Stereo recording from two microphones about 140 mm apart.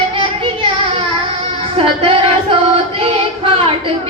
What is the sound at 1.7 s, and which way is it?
Music, 40° right (ahead or behind).